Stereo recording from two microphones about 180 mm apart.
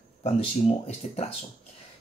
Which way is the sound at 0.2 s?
35° left (ahead or behind).